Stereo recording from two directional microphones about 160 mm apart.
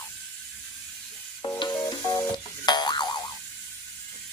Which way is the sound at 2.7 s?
25° left (ahead or behind).